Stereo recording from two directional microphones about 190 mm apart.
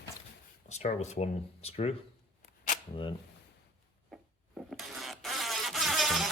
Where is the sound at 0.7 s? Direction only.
35° left (ahead or behind).